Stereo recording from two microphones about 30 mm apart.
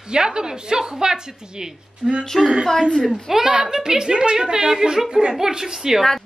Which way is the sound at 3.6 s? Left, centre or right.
Right.